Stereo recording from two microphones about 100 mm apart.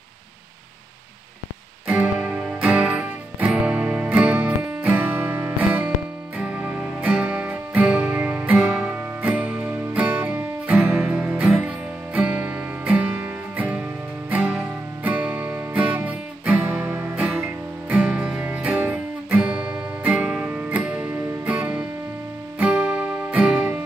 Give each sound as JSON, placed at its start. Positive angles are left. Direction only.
{"t": 1.9, "sound": "music", "side_deg": -15}